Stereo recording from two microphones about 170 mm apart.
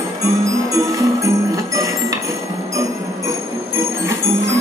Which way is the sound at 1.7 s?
20° right (ahead or behind).